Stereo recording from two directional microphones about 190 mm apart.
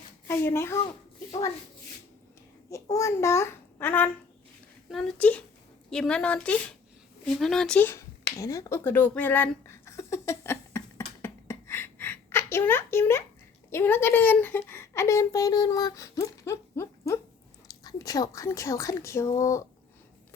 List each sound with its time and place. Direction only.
0.3 s speech: 10° left (ahead or behind)
2.6 s speech: 15° left (ahead or behind)
8.4 s a sound: 15° left (ahead or behind)
13.7 s speech: 10° left (ahead or behind)